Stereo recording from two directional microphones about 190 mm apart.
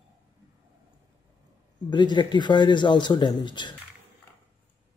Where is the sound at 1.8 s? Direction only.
25° left (ahead or behind).